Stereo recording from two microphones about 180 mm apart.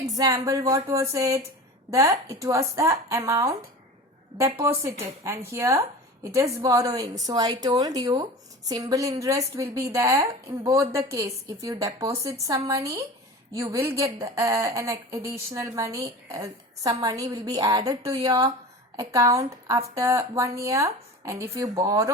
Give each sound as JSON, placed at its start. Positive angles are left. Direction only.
{"t": 0.2, "sound": "a woman's voice", "side_deg": -20}
{"t": 4.8, "sound": "a woman's voice", "side_deg": -15}